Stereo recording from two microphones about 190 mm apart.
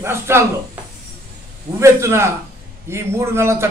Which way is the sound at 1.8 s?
15° right (ahead or behind).